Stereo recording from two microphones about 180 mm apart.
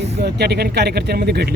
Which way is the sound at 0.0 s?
65° right (ahead or behind).